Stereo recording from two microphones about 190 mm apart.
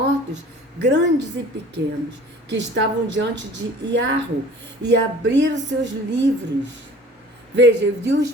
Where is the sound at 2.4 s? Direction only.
70° right (ahead or behind).